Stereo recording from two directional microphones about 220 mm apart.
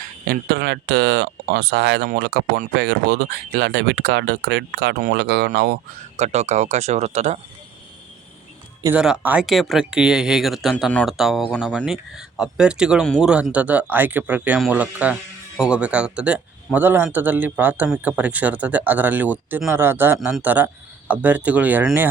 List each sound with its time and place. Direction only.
0.3 s speech: 45° right (ahead or behind)
6.1 s speech: 30° right (ahead or behind)
8.8 s speech: 5° right (ahead or behind)